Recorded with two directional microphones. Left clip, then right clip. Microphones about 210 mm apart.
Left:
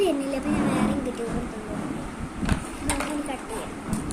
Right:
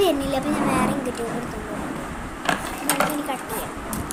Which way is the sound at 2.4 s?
20° right (ahead or behind).